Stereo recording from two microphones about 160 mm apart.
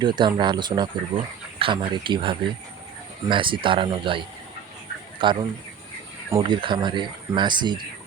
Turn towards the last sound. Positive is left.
turn(degrees=-30)  # may be behind; listen again after turning